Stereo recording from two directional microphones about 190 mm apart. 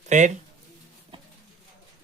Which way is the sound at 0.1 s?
40° right (ahead or behind).